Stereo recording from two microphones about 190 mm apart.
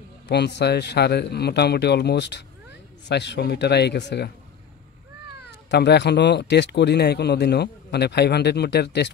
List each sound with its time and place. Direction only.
0.3 s a man's voice: 60° left (ahead or behind)
5.7 s a man's voice: 60° left (ahead or behind)